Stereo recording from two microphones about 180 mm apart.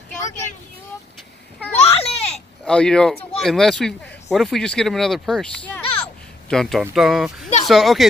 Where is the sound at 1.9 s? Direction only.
35° left (ahead or behind).